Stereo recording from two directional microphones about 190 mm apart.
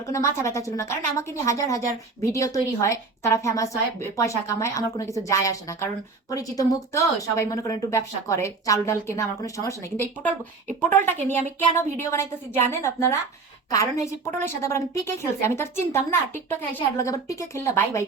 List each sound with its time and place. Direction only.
0.1 s a woman's voice: 15° left (ahead or behind)